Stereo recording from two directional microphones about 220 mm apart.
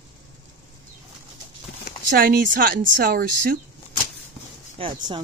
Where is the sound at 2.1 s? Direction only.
40° right (ahead or behind).